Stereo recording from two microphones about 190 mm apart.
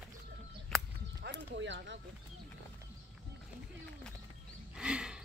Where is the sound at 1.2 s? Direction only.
70° right (ahead or behind).